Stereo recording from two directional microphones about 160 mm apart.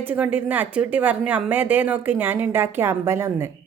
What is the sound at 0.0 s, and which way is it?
Speech, 10° right (ahead or behind).